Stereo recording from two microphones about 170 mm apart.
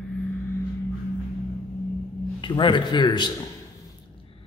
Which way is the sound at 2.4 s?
30° left (ahead or behind).